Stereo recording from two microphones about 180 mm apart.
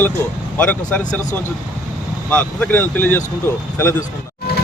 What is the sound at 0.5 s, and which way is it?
Speech, 10° left (ahead or behind).